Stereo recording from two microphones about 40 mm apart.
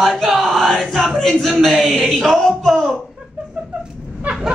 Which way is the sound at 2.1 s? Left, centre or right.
Centre.